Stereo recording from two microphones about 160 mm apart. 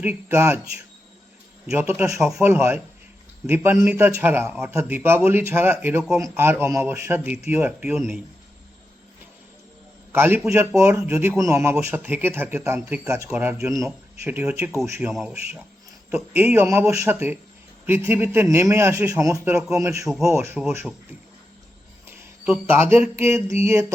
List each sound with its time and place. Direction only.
0.0 s a man's voice: 15° right (ahead or behind)
1.7 s a man's voice: 15° right (ahead or behind)
10.1 s a man's voice: 15° right (ahead or behind)
22.6 s a man's voice: 15° right (ahead or behind)